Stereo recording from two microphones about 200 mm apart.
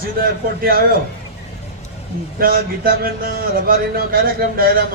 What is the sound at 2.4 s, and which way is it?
Speech, 45° right (ahead or behind).